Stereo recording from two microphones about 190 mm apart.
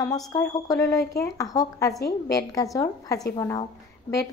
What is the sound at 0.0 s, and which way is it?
Speech, 20° left (ahead or behind).